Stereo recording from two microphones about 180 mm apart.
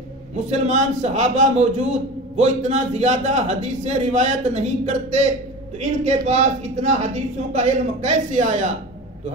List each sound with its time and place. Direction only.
0.5 s a man's voice: 40° right (ahead or behind)